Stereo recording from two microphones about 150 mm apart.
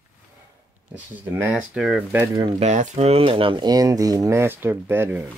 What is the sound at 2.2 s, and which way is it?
Speech, 25° right (ahead or behind).